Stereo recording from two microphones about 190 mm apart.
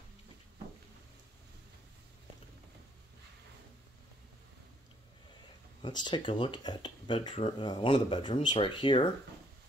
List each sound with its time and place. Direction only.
5.8 s speech: 25° left (ahead or behind)